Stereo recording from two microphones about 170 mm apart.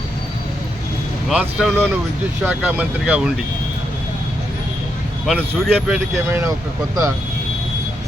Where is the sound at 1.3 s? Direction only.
5° right (ahead or behind).